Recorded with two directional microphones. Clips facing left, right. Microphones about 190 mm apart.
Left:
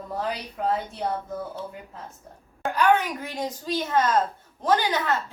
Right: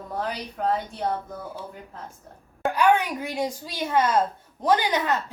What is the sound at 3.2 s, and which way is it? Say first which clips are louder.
A woman's voice: right 2 dB; 10° right (ahead or behind).